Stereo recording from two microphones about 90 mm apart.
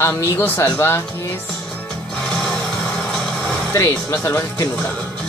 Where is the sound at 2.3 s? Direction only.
5° left (ahead or behind).